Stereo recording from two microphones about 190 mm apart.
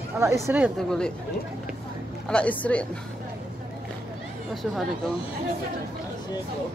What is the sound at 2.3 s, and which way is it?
Speech, 5° left (ahead or behind).